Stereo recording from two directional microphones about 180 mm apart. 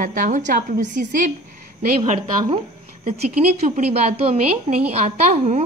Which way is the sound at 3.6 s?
40° right (ahead or behind).